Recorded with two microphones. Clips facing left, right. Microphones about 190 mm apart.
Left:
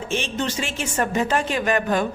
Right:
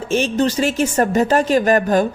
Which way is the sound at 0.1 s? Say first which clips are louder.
Right 9 dB; 40° right (ahead or behind).